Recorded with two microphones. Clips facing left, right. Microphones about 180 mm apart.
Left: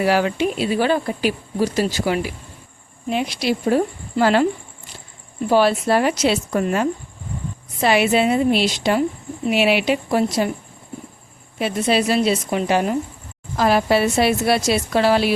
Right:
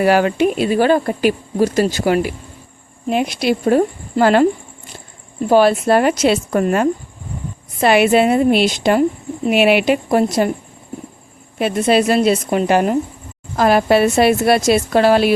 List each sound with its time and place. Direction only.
0.0 s speech: 55° right (ahead or behind)
5.5 s a woman's voice: 50° right (ahead or behind)
11.6 s speech: 55° right (ahead or behind)